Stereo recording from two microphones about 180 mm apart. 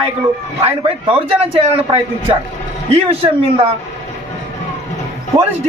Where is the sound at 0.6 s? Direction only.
30° right (ahead or behind).